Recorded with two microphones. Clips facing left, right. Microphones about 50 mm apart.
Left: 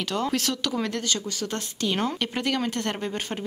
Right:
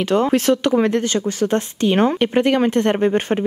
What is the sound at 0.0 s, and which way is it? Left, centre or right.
Speech, right.